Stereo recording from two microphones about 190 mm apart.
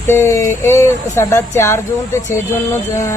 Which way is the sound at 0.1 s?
15° left (ahead or behind).